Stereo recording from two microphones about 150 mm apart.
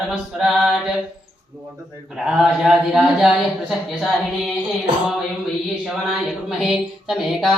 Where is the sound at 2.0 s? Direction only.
5° right (ahead or behind).